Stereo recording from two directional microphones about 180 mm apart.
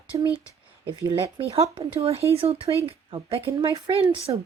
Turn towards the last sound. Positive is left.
turn(degrees=-30)  # may be behind; listen again after turning